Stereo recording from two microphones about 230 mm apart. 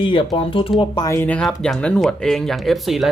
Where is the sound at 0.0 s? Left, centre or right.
Left.